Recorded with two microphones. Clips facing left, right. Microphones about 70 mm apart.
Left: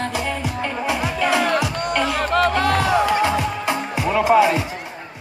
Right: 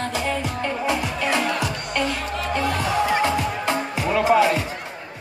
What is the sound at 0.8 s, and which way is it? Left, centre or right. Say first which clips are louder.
Music: left 1 dB; left.